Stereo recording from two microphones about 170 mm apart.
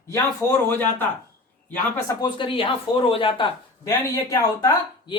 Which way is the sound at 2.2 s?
30° left (ahead or behind).